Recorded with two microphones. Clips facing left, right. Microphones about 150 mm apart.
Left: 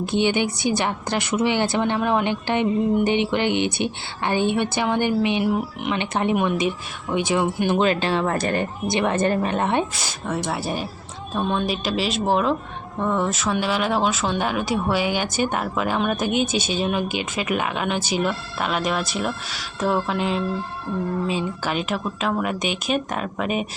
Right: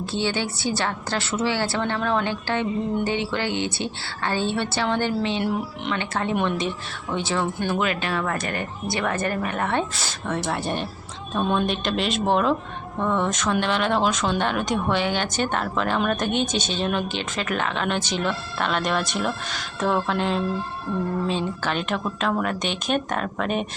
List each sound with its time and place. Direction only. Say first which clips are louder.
0.0 s a woman's voice: left 5 dB; 15° left (ahead or behind)
6.3 s a woman's voice: left 1 dB; 5° left (ahead or behind)
7.8 s speech: left 5 dB; 30° left (ahead or behind); by 23.6 s 5° left (ahead or behind)